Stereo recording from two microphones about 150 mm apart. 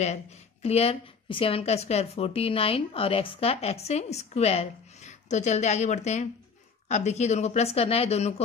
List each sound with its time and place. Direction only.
0.0 s a woman's voice: 45° left (ahead or behind)